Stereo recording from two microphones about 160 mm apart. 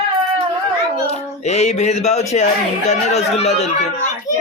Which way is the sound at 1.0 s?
45° left (ahead or behind).